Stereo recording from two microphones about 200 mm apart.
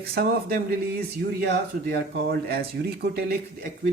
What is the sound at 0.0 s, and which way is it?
Speech, 50° right (ahead or behind).